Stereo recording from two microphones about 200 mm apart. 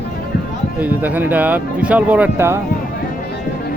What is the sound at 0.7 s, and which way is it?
Speech, 10° right (ahead or behind).